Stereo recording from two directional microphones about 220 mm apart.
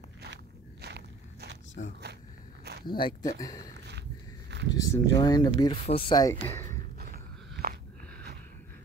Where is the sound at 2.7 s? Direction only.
50° right (ahead or behind).